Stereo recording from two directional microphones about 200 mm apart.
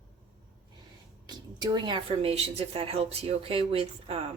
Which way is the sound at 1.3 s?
20° right (ahead or behind).